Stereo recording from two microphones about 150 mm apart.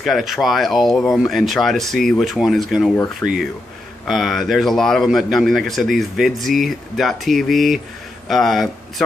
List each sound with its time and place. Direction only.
0.0 s speech: centre (ahead or behind)
3.2 s speech: 20° left (ahead or behind)
4.1 s speech: centre (ahead or behind)